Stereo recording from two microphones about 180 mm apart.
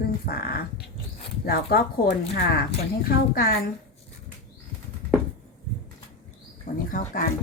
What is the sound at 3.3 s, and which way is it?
Speech, 55° left (ahead or behind).